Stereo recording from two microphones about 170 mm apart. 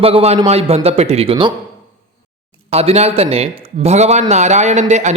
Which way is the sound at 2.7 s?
35° right (ahead or behind).